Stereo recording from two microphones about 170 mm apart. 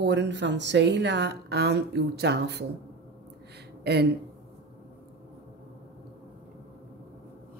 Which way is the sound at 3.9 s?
75° right (ahead or behind).